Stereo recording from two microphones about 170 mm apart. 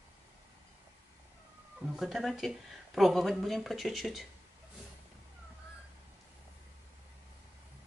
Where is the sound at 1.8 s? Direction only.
Centre (ahead or behind).